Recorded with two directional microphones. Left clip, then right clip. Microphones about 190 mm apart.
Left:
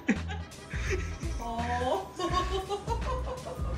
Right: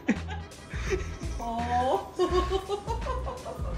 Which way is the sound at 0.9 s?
10° right (ahead or behind).